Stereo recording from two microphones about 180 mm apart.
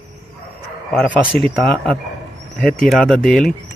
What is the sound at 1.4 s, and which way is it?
Speech, 30° right (ahead or behind).